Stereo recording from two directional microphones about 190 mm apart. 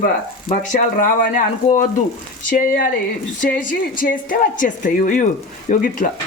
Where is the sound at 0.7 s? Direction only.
45° left (ahead or behind).